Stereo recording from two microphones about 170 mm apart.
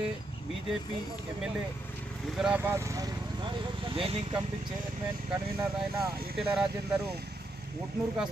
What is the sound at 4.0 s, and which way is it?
Speech, 30° right (ahead or behind).